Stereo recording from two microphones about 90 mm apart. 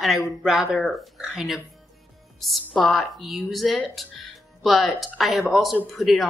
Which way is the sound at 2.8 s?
Centre (ahead or behind).